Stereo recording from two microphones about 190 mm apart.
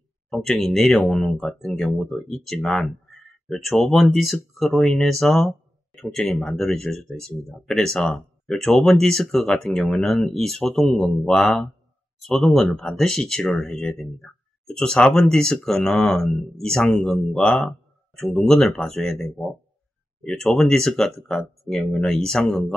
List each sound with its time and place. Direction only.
0.3 s speech: centre (ahead or behind)